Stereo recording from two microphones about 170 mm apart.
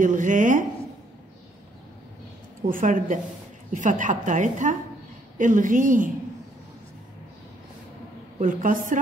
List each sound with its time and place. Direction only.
0.0 s a sound: 50° right (ahead or behind)
2.7 s a woman's voice: 50° right (ahead or behind)
8.4 s a woman's voice: 50° right (ahead or behind)